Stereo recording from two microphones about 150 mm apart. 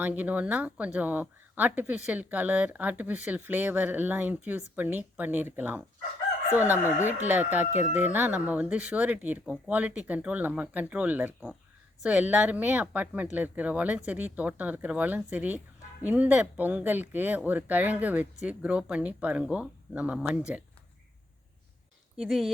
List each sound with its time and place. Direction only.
0.0 s speech: 10° right (ahead or behind)
22.2 s speech: centre (ahead or behind)